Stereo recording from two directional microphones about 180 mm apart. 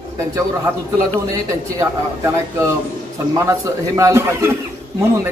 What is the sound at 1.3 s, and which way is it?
A man's voice, 15° right (ahead or behind).